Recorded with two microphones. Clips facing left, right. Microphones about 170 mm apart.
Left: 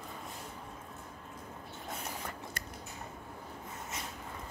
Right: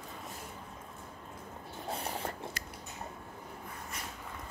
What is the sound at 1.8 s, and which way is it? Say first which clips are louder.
Mechanisms: right 5 dB; 30° right (ahead or behind).